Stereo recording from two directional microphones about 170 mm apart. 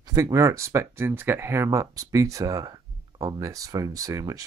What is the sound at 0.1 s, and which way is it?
Speech, 20° right (ahead or behind).